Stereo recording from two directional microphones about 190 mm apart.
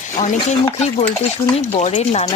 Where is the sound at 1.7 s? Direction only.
35° left (ahead or behind).